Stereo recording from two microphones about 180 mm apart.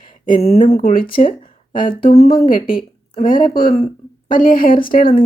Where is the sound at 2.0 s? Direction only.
30° left (ahead or behind).